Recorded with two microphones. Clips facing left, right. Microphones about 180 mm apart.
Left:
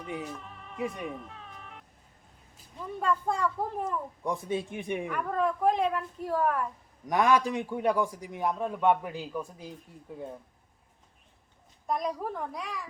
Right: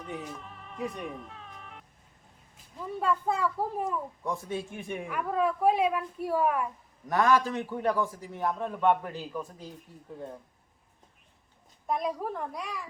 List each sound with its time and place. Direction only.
0.0 s music: 5° left (ahead or behind)
2.7 s speech: 5° right (ahead or behind)
4.2 s a man's voice: 15° left (ahead or behind)
5.0 s a woman's voice: 5° right (ahead or behind)
7.1 s a man's voice: 15° left (ahead or behind)
11.9 s speech: centre (ahead or behind)